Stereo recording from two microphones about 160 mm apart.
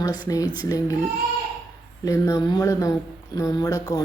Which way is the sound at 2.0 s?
20° left (ahead or behind).